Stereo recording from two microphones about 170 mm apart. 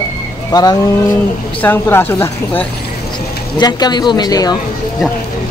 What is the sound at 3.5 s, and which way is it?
A man's voice, 25° left (ahead or behind).